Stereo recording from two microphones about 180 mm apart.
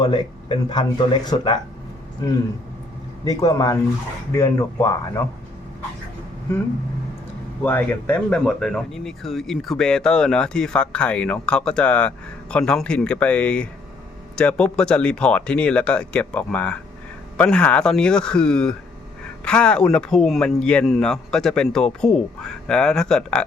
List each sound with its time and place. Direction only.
0.0 s speech: 25° left (ahead or behind)
3.2 s speech: 20° left (ahead or behind)
7.6 s speech: 10° left (ahead or behind)